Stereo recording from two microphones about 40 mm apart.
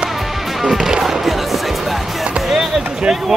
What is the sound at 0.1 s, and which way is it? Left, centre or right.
Music, centre.